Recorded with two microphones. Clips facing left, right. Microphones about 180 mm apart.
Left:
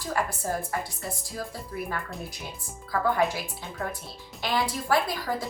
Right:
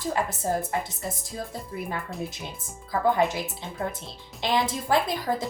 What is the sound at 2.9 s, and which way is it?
Speech, 20° right (ahead or behind).